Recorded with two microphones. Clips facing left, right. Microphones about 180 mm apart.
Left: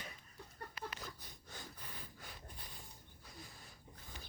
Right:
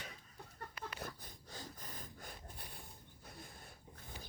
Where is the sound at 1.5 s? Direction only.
35° right (ahead or behind).